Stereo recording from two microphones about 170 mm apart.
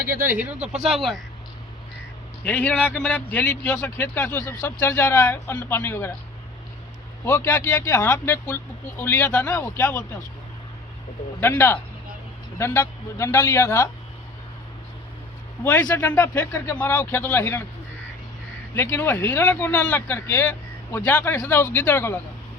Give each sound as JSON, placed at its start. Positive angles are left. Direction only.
{"t": 0.3, "sound": "speech", "side_deg": -5}
{"t": 2.4, "sound": "a man's voice", "side_deg": 10}
{"t": 7.3, "sound": "a man's voice", "side_deg": 15}
{"t": 11.3, "sound": "a man's voice", "side_deg": 15}
{"t": 15.6, "sound": "a man's voice", "side_deg": 15}
{"t": 18.8, "sound": "a man's voice", "side_deg": 15}